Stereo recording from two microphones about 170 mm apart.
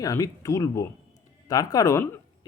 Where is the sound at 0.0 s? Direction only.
20° left (ahead or behind).